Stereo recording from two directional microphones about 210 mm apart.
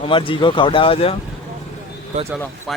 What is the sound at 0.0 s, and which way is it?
Speech, 25° left (ahead or behind).